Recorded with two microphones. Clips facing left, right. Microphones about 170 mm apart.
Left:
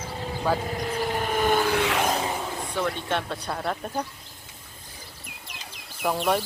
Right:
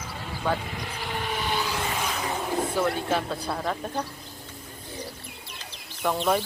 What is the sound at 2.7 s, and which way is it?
Speech, 5° right (ahead or behind).